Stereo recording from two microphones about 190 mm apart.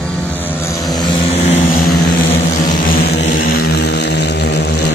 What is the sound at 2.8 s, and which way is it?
Vehicle, 50° left (ahead or behind).